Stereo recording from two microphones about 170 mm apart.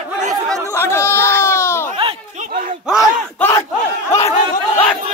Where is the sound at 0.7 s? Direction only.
15° left (ahead or behind).